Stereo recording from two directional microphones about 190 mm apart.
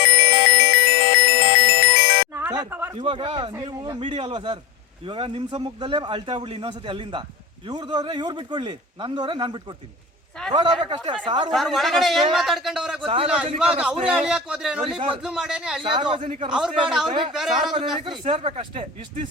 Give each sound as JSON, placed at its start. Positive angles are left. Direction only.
{"t": 0.0, "sound": "music", "side_deg": 40}
{"t": 2.3, "sound": "a sound", "side_deg": -15}
{"t": 3.0, "sound": "a man's voice", "side_deg": -25}
{"t": 11.5, "sound": "speech", "side_deg": 0}
{"t": 14.8, "sound": "a man's voice", "side_deg": -30}
{"t": 15.2, "sound": "speech", "side_deg": -5}
{"t": 15.8, "sound": "a man's voice", "side_deg": -25}
{"t": 16.5, "sound": "speech", "side_deg": -5}
{"t": 18.0, "sound": "a man's voice", "side_deg": -30}